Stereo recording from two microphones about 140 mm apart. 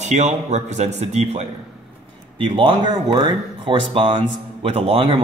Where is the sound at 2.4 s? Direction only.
40° right (ahead or behind).